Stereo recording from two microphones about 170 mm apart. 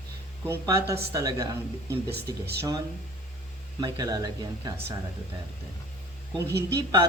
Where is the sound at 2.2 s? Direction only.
70° right (ahead or behind).